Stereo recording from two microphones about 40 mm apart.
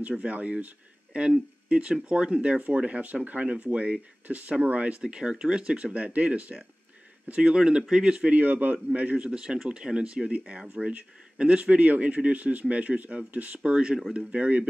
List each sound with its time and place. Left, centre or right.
0.2 s speech: right
5.0 s speech: centre
7.5 s speech: centre
8.3 s a man's voice: right
13.7 s speech: right